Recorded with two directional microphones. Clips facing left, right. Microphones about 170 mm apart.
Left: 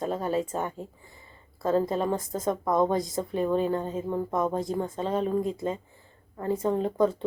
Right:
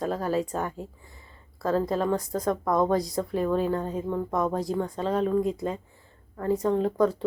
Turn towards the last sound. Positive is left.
turn(degrees=0)  # may be behind; listen again after turning